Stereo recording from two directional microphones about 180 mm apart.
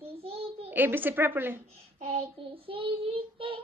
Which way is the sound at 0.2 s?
30° right (ahead or behind).